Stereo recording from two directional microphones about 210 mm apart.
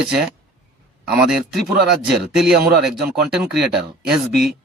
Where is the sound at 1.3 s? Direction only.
Centre (ahead or behind).